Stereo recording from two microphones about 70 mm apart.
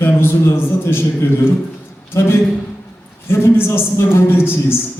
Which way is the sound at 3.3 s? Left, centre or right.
Left.